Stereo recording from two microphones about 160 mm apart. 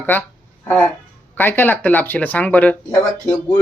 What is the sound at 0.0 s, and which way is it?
Speech, 10° left (ahead or behind).